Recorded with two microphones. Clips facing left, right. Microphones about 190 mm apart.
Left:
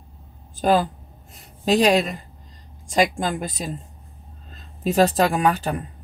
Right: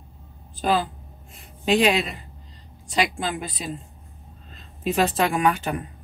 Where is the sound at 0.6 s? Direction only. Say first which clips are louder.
Left 4 dB; 45° left (ahead or behind).